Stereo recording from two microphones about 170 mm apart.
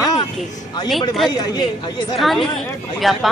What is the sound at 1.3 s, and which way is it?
Speech, 25° left (ahead or behind).